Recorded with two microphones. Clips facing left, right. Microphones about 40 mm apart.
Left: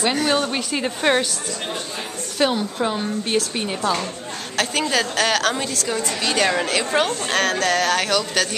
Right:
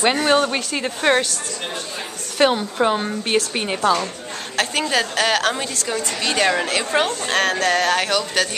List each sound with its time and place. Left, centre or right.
0.0 s a woman's voice: centre
0.7 s a woman's voice: centre
2.3 s speech: right
4.6 s a woman's voice: centre